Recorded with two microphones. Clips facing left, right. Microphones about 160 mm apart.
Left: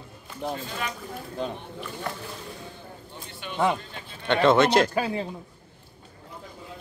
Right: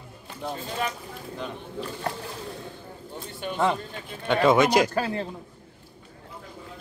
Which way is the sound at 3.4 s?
45° right (ahead or behind).